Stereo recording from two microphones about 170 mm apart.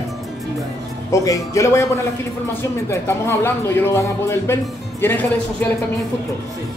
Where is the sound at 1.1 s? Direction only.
20° left (ahead or behind).